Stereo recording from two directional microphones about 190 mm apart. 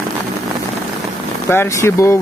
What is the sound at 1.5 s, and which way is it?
Speech, 15° left (ahead or behind).